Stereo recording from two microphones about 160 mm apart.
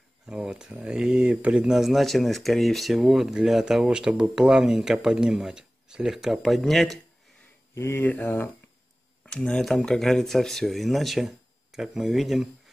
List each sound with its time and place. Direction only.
0.3 s speech: 5° right (ahead or behind)
7.7 s speech: 15° left (ahead or behind); by 12.4 s centre (ahead or behind)